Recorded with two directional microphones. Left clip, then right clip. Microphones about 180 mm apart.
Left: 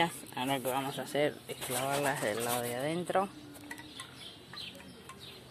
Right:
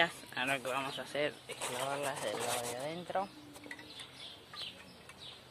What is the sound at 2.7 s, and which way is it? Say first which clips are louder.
Speech: left 6 dB; 30° left (ahead or behind).